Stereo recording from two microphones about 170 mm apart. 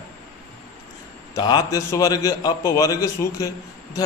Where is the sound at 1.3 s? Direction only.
20° left (ahead or behind).